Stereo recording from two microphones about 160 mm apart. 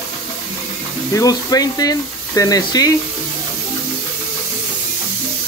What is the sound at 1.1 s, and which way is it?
Speech, 20° left (ahead or behind).